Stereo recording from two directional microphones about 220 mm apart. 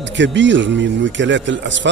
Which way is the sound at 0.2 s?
55° right (ahead or behind).